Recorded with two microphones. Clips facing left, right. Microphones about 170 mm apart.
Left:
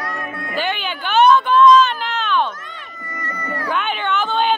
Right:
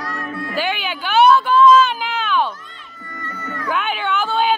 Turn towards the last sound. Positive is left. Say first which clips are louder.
# even
turn(degrees=-5)  # may be behind; listen again after turning